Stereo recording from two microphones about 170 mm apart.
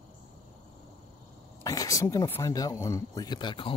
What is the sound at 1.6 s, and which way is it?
Speech, 20° left (ahead or behind).